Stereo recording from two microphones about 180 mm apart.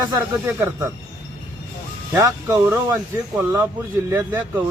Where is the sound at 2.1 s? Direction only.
15° right (ahead or behind).